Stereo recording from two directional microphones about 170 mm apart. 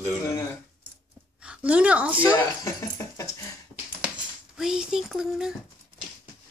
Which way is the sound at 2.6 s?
15° left (ahead or behind).